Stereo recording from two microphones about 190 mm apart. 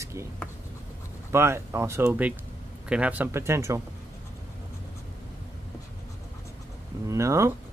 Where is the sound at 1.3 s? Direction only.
15° right (ahead or behind).